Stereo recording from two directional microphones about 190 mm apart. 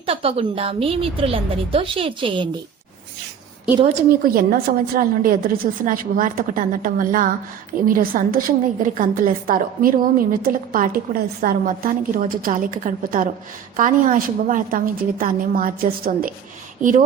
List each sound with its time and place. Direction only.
0.0 s a woman's voice: 30° right (ahead or behind)
4.2 s a woman's voice: 50° right (ahead or behind)